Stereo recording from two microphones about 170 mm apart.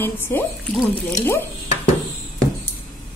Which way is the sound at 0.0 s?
10° left (ahead or behind).